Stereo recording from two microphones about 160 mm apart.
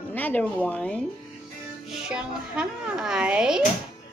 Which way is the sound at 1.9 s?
5° right (ahead or behind).